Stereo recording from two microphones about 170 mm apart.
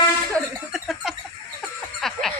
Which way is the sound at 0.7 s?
Centre (ahead or behind).